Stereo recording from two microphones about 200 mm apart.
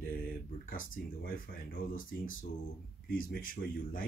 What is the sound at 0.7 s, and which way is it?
Speech, 45° left (ahead or behind).